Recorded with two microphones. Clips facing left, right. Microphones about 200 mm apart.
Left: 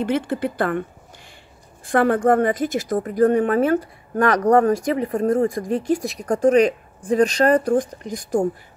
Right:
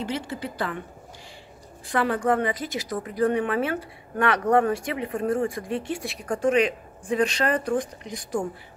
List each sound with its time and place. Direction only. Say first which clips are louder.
0.0 s a woman's voice: left 8 dB; 55° left (ahead or behind)
1.9 s a woman's voice: left 6 dB; 50° left (ahead or behind)